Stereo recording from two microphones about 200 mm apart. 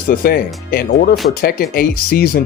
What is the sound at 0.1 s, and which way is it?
Speech, 50° left (ahead or behind).